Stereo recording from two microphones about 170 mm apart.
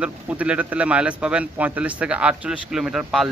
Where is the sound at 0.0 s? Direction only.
5° right (ahead or behind).